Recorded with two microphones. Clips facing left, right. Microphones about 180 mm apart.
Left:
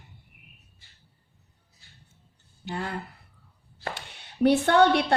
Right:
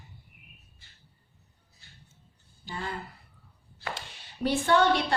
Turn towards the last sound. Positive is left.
turn(degrees=65)  # may be behind; listen again after turning